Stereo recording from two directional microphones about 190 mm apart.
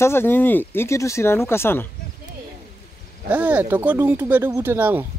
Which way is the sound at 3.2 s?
10° right (ahead or behind).